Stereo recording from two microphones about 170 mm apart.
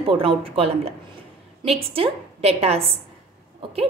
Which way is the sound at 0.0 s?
30° right (ahead or behind).